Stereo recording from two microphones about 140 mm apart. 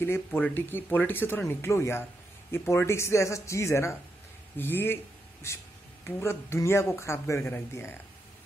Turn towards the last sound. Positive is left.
turn(degrees=15)  # may be behind; listen again after turning